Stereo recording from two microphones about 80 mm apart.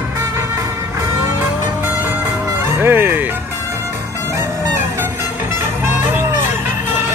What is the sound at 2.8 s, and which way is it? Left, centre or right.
Speech, right.